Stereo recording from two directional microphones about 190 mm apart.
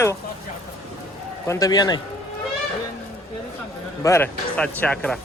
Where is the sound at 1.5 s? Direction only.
20° left (ahead or behind).